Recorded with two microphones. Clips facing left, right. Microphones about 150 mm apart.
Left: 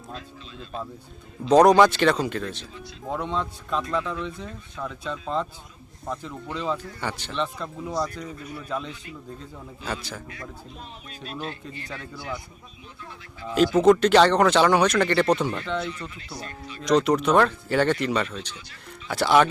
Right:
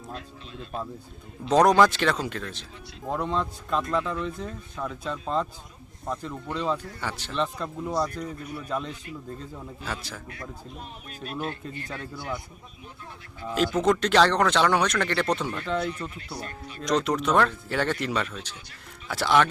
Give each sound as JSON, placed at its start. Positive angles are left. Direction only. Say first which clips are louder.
{"t": 1.5, "sound": "speech", "louder": "left 3 dB", "side_deg": 0}
{"t": 11.9, "sound": "speech", "louder": "even", "side_deg": 0}
{"t": 13.7, "sound": "speech", "louder": "left 5 dB", "side_deg": 5}
{"t": 16.0, "sound": "speech", "louder": "right 2 dB", "side_deg": -50}
{"t": 16.8, "sound": "speech", "louder": "left 4 dB", "side_deg": 0}